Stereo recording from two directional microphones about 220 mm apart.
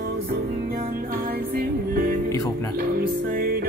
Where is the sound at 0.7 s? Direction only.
40° right (ahead or behind).